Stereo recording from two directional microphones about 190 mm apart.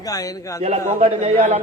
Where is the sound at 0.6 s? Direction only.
35° right (ahead or behind).